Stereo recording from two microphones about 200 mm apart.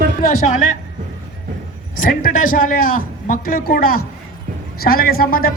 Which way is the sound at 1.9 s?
45° left (ahead or behind).